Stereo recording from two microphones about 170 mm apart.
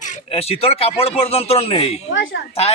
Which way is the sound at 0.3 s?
35° left (ahead or behind).